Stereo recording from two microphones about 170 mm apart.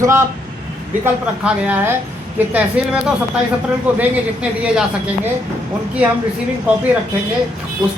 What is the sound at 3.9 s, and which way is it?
Speech, 5° right (ahead or behind).